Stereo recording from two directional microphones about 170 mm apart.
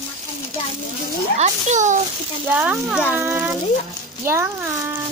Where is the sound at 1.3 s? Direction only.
45° right (ahead or behind).